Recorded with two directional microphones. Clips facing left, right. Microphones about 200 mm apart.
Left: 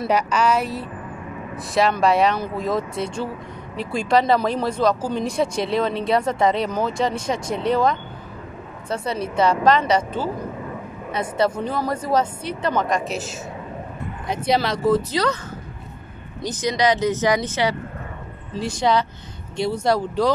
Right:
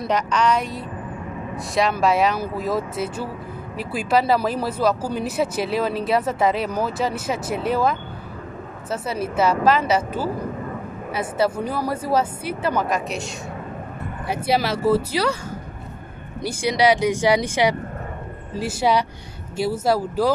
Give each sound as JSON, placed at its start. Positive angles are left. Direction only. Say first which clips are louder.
{"t": 0.0, "sound": "speech", "louder": "left 1 dB", "side_deg": 5}
{"t": 16.4, "sound": "speech", "louder": "right 2 dB", "side_deg": -10}